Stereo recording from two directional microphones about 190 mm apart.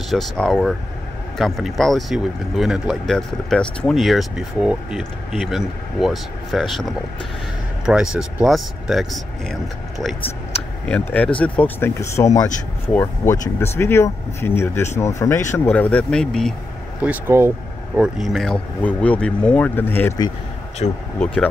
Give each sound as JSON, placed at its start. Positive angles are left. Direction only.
{"t": 0.1, "sound": "speech", "side_deg": 0}
{"t": 10.9, "sound": "speech", "side_deg": 5}
{"t": 17.0, "sound": "speech", "side_deg": -10}
{"t": 20.8, "sound": "speech", "side_deg": 40}